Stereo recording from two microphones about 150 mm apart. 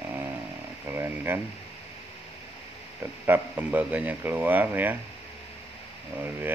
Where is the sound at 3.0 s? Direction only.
15° right (ahead or behind).